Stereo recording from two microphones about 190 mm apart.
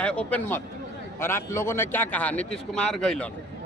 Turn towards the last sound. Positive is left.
turn(degrees=5)  # may be behind; listen again after turning